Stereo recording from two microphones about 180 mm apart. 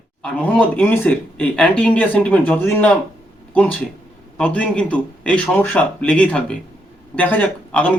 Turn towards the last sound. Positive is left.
turn(degrees=10)  # may be behind; listen again after turning